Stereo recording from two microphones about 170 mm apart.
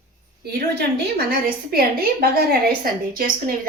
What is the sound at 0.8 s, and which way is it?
A woman's voice, 60° right (ahead or behind).